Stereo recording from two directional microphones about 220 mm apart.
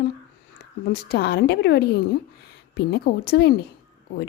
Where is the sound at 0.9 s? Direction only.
45° left (ahead or behind).